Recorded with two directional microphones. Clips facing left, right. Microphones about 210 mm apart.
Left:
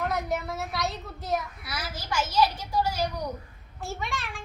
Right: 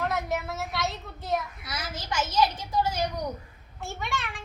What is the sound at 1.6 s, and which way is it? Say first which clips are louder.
A child's voice: even; 20° right (ahead or behind).